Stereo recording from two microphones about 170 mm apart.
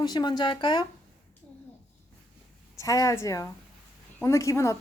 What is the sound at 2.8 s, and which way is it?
A woman's voice, 20° left (ahead or behind).